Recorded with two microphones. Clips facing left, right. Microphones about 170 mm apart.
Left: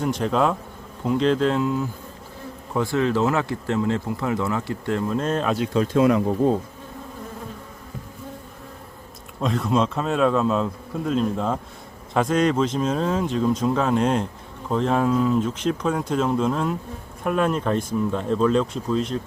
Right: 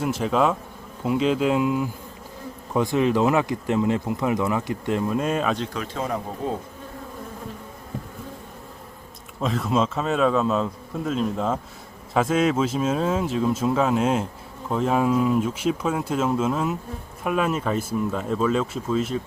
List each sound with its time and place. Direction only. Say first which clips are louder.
0.0 s speech: even; 5° right (ahead or behind)
6.0 s speech: left 10 dB; 85° left
9.4 s speech: left 1 dB; centre (ahead or behind)